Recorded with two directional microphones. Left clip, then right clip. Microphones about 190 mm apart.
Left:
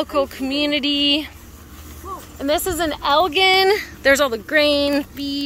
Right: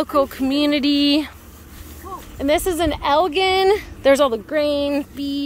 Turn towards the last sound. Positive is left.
turn(degrees=-25)  # may be behind; listen again after turning